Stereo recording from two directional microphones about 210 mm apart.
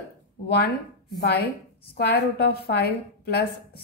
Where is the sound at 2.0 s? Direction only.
50° left (ahead or behind).